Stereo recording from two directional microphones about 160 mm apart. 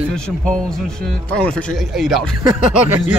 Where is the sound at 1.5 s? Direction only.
5° left (ahead or behind).